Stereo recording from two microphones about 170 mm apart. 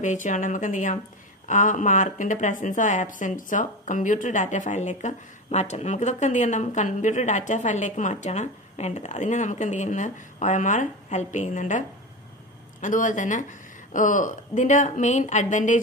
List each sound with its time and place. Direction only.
0.0 s a woman's voice: 45° left (ahead or behind)
12.8 s a woman's voice: 50° left (ahead or behind)